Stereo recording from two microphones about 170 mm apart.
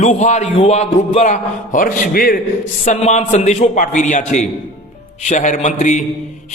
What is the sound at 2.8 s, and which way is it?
Speech, 45° left (ahead or behind).